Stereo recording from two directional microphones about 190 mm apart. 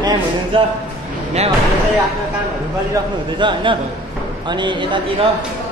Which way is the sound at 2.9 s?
25° right (ahead or behind).